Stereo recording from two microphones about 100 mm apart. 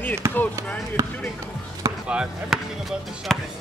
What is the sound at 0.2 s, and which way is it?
Speech, 30° right (ahead or behind).